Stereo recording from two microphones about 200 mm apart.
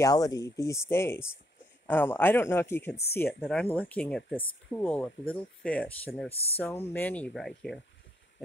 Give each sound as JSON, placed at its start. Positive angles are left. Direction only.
{"t": 0.0, "sound": "speech", "side_deg": 20}
{"t": 6.3, "sound": "speech", "side_deg": 30}
{"t": 6.6, "sound": "speech", "side_deg": 10}